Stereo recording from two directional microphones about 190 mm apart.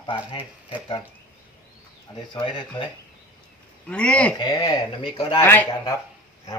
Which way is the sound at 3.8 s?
5° left (ahead or behind).